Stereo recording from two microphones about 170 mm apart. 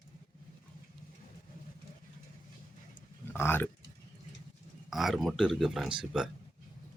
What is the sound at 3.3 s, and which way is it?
Speech, 15° left (ahead or behind).